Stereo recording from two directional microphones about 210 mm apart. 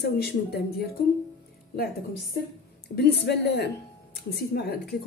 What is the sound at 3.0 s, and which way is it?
A woman's voice, 50° left (ahead or behind).